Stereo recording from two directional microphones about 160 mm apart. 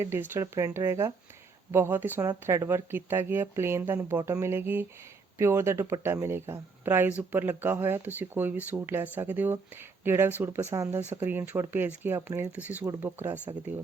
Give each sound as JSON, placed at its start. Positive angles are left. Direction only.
{"t": 0.0, "sound": "speech", "side_deg": -15}